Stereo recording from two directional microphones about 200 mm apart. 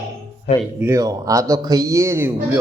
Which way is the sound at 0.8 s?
15° right (ahead or behind).